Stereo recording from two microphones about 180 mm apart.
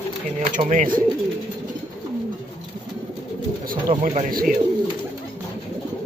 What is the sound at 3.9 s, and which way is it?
Speech, 40° right (ahead or behind).